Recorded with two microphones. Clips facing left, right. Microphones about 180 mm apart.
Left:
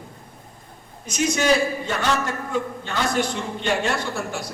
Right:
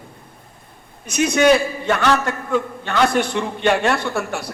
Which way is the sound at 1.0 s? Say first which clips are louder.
Right 6 dB; 60° right (ahead or behind).